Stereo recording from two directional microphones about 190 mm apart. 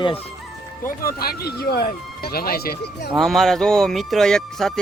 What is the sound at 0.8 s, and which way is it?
Speech, 50° left (ahead or behind).